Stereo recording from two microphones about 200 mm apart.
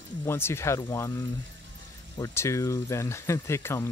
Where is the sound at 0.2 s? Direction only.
10° left (ahead or behind).